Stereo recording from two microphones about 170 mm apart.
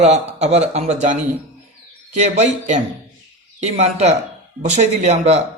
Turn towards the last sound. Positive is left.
turn(degrees=-40)  # may be behind; listen again after turning